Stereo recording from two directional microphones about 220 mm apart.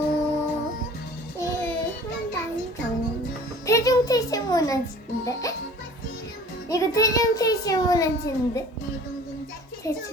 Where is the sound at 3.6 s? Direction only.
15° left (ahead or behind).